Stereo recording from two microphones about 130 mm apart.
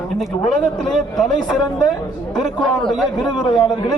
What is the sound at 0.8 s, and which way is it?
Speech, 5° left (ahead or behind).